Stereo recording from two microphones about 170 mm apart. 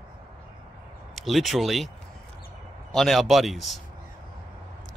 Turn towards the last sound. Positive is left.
turn(degrees=0)  # may be behind; listen again after turning